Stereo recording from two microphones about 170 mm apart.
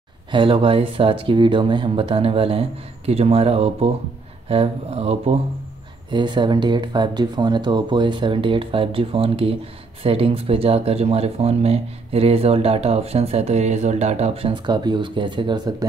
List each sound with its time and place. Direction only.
0.3 s speech: 30° right (ahead or behind)